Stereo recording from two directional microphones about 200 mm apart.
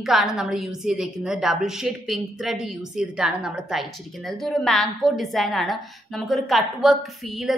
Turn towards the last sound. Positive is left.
turn(degrees=0)  # may be behind; listen again after turning